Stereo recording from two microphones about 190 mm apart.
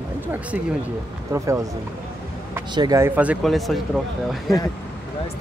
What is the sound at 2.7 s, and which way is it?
Speech, 20° right (ahead or behind).